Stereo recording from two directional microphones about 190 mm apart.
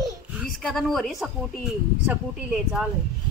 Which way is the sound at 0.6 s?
Centre (ahead or behind).